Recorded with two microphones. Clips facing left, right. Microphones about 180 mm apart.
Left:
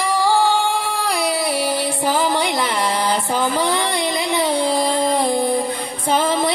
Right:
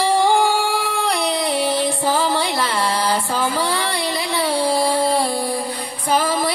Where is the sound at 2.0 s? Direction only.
15° left (ahead or behind).